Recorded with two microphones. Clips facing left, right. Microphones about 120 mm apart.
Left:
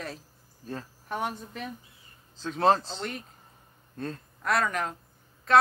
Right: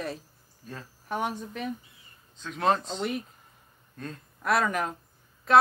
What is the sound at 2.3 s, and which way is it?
Speech, 30° left (ahead or behind).